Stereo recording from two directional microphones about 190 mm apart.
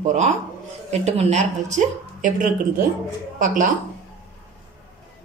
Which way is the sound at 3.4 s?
40° right (ahead or behind).